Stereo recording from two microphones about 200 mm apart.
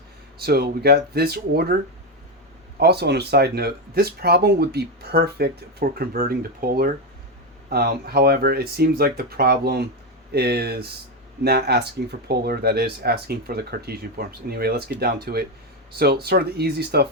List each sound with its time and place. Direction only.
0.3 s speech: 50° right (ahead or behind)